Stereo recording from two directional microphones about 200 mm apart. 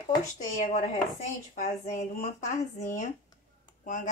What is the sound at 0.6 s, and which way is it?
Speech, 40° left (ahead or behind).